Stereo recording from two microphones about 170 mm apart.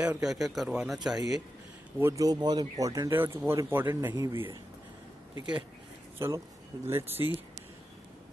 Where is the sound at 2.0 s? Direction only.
20° right (ahead or behind).